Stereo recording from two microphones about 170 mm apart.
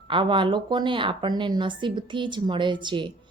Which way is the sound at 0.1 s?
30° right (ahead or behind).